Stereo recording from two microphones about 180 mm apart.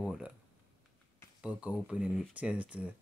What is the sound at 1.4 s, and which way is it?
Speech, 5° right (ahead or behind).